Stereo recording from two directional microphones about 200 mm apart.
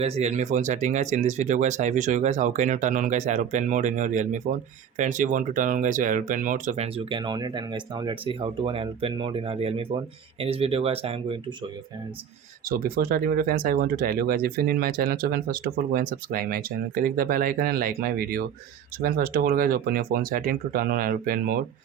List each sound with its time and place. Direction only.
0.0 s speech: 35° right (ahead or behind)
12.6 s speech: 45° right (ahead or behind)